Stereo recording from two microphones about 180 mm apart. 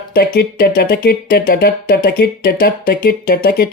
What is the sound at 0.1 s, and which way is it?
Speech, 55° left (ahead or behind).